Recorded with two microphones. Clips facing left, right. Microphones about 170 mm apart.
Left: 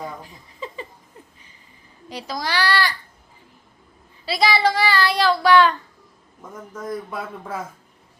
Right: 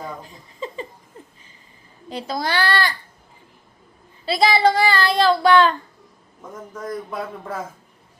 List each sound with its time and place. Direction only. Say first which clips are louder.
0.3 s a sound: right 3 dB; 25° right (ahead or behind)
2.0 s a child's voice: right 3 dB; 25° right (ahead or behind)
4.3 s a child's voice: right 3 dB; 25° right (ahead or behind)
6.8 s speech: right 1 dB; centre (ahead or behind)